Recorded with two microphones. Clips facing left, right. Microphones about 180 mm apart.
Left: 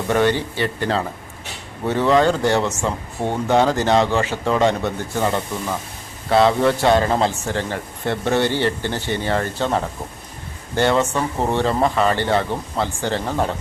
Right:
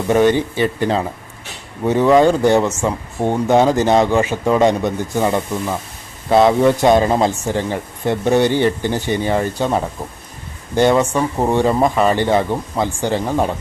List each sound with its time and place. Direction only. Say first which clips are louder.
0.1 s speech: right 5 dB; 15° right (ahead or behind)